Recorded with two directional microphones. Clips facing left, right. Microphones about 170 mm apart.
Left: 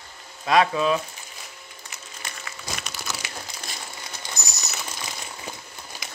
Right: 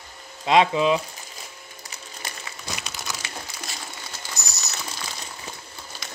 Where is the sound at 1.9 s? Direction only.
30° right (ahead or behind).